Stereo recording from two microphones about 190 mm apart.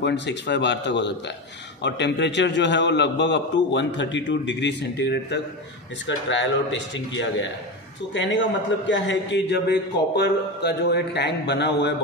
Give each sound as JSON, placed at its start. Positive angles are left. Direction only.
{"t": 0.0, "sound": "a man's voice", "side_deg": 65}
{"t": 6.0, "sound": "a man's voice", "side_deg": 75}